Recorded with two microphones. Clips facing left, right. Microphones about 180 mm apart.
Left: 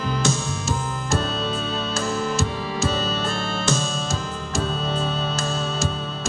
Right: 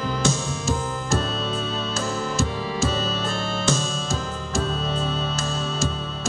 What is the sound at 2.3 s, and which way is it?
Music, 65° left (ahead or behind).